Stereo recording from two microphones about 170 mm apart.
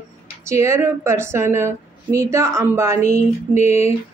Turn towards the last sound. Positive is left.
turn(degrees=40)  # may be behind; listen again after turning